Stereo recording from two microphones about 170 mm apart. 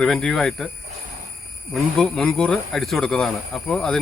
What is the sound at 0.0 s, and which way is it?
Speech, 5° left (ahead or behind).